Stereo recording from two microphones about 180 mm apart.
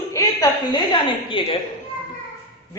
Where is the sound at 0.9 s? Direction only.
30° left (ahead or behind).